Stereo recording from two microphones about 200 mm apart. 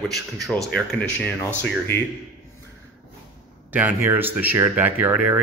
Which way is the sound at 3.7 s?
10° right (ahead or behind).